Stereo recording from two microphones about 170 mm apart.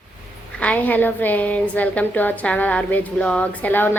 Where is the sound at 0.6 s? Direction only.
10° left (ahead or behind).